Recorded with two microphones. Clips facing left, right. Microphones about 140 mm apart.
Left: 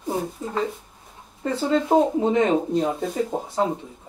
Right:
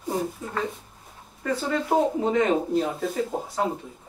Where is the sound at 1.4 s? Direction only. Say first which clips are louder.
Left 4 dB; 25° left (ahead or behind).